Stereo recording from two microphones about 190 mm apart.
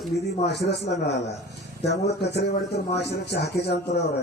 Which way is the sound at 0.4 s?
60° left (ahead or behind).